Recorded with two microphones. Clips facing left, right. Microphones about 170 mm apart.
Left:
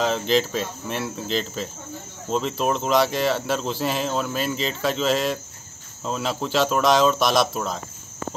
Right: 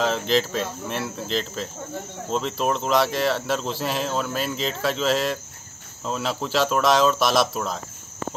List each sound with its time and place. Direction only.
0.0 s speech: centre (ahead or behind)